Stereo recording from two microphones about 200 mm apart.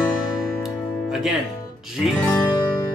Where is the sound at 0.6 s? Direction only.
Centre (ahead or behind).